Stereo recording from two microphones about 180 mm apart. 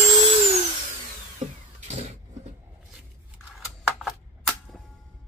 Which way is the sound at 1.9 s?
35° right (ahead or behind).